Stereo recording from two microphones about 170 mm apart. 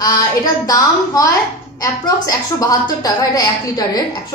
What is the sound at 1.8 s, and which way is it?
A woman's voice, 20° left (ahead or behind).